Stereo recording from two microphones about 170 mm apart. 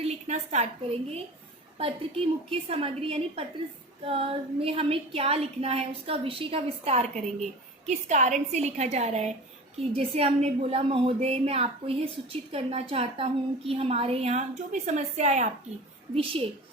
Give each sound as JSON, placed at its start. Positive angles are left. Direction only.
{"t": 0.0, "sound": "a woman's voice", "side_deg": -40}